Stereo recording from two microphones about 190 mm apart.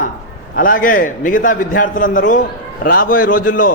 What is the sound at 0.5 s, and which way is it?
A man's voice, 45° left (ahead or behind).